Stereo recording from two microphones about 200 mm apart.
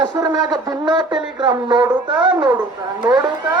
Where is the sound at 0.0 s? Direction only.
20° right (ahead or behind).